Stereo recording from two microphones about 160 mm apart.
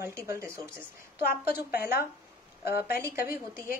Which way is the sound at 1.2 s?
70° left (ahead or behind).